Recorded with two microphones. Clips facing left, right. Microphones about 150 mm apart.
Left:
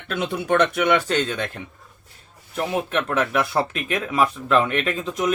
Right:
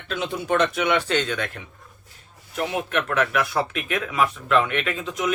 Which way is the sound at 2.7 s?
35° left (ahead or behind).